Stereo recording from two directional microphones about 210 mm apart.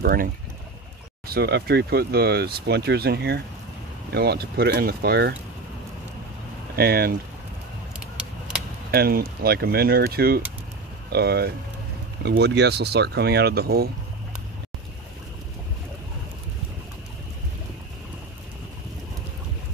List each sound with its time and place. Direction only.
0.0 s speech: 45° right (ahead or behind)
6.8 s speech: 45° right (ahead or behind)
8.9 s speech: 45° right (ahead or behind)